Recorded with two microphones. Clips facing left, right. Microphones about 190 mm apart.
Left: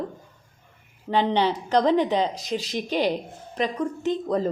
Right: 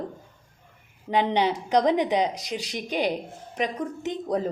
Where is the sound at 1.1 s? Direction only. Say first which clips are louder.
Left 1 dB; 15° right (ahead or behind).